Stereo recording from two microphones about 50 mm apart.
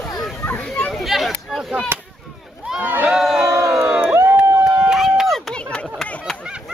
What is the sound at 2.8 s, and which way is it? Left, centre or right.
Crowd, right.